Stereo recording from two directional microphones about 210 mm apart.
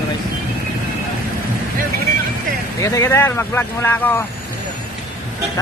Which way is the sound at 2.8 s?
15° left (ahead or behind).